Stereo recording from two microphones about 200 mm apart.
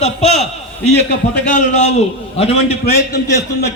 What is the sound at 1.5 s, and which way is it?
A man's voice, 35° left (ahead or behind).